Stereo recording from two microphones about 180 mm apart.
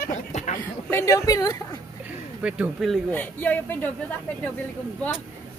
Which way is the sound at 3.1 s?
10° left (ahead or behind).